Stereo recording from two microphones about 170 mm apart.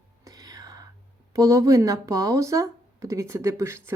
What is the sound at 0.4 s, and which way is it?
Whispering, 20° right (ahead or behind).